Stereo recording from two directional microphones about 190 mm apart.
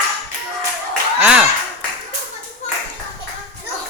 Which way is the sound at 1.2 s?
5° right (ahead or behind).